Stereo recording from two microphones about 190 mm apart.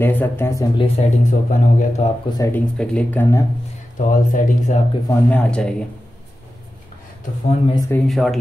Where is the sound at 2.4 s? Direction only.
10° left (ahead or behind).